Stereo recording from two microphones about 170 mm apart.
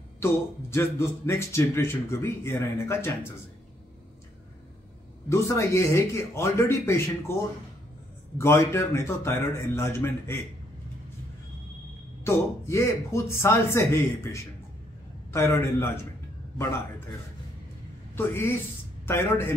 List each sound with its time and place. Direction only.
0.2 s speech: 15° left (ahead or behind)
5.3 s speech: 15° left (ahead or behind)
8.4 s speech: 15° left (ahead or behind)
12.2 s speech: 15° left (ahead or behind)
15.3 s speech: 15° left (ahead or behind)
18.1 s a man's voice: 15° left (ahead or behind)